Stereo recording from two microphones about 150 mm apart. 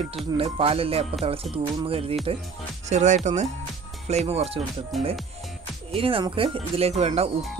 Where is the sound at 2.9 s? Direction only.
50° right (ahead or behind).